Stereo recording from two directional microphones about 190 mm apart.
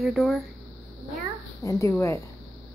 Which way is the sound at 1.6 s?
15° left (ahead or behind).